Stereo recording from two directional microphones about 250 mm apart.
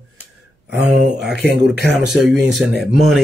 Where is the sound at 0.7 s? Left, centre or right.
Right.